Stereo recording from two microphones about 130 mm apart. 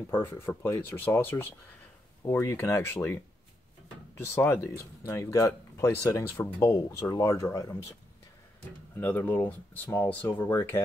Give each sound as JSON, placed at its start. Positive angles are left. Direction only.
{"t": 0.1, "sound": "speech", "side_deg": 20}
{"t": 4.6, "sound": "speech", "side_deg": 20}
{"t": 8.9, "sound": "speech", "side_deg": 15}